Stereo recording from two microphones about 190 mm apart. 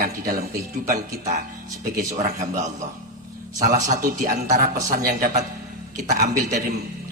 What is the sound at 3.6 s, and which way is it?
Speech, 45° right (ahead or behind).